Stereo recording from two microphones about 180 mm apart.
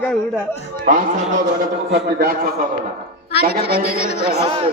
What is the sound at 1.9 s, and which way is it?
A man's voice, 60° right (ahead or behind).